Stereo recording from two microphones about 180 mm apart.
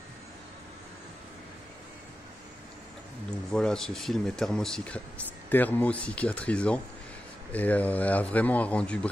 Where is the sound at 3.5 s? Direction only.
5° left (ahead or behind).